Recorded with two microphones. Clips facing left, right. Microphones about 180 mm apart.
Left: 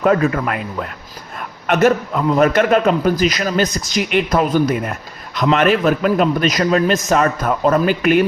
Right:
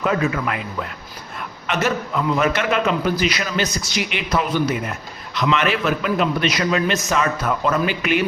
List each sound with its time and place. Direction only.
0.0 s a man's voice: 55° left (ahead or behind)